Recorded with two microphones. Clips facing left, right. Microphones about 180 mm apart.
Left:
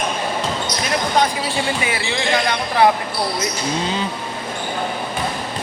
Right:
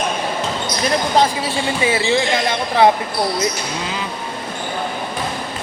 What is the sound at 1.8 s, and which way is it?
Speech, 25° right (ahead or behind).